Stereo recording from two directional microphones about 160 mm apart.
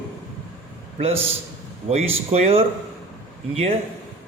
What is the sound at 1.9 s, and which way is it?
Speech, 40° right (ahead or behind).